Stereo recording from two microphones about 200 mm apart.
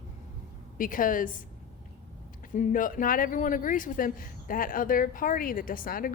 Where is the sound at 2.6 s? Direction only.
40° left (ahead or behind).